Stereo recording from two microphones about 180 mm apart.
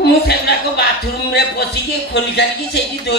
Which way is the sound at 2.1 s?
70° left (ahead or behind).